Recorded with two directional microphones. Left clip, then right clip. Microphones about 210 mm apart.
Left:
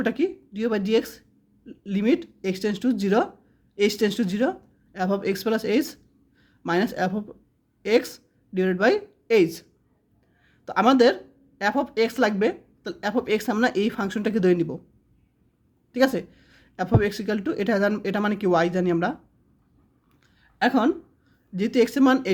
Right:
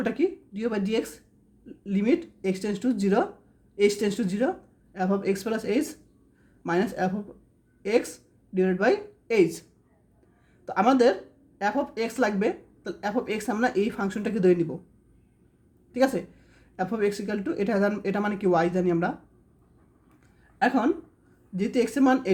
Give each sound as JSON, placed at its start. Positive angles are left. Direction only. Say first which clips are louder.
{"t": 0.0, "sound": "a woman's voice", "louder": "left 1 dB", "side_deg": 25}
{"t": 10.7, "sound": "speech", "louder": "left 3 dB", "side_deg": 25}
{"t": 15.9, "sound": "speech", "louder": "left 2 dB", "side_deg": 25}
{"t": 20.6, "sound": "speech", "louder": "left 2 dB", "side_deg": 25}